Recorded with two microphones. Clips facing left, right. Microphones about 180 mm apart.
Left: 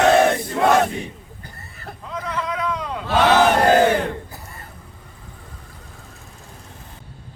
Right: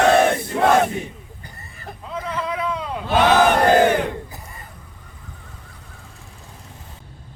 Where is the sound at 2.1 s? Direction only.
30° right (ahead or behind).